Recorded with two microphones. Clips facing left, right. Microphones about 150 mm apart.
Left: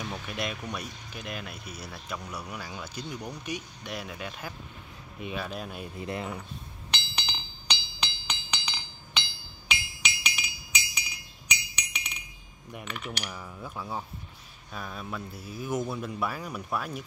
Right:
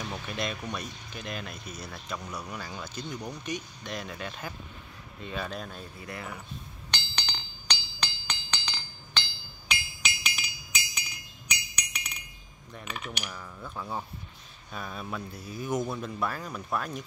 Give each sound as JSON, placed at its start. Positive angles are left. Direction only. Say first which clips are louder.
{"t": 0.1, "sound": "speech", "louder": "even", "side_deg": 10}
{"t": 5.9, "sound": "speech", "louder": "left 7 dB", "side_deg": 25}
{"t": 6.9, "sound": "chink", "louder": "left 1 dB", "side_deg": 5}
{"t": 8.0, "sound": "music", "louder": "left 1 dB", "side_deg": 5}
{"t": 9.7, "sound": "chink", "louder": "left 1 dB", "side_deg": 0}
{"t": 13.3, "sound": "speech", "louder": "left 1 dB", "side_deg": 10}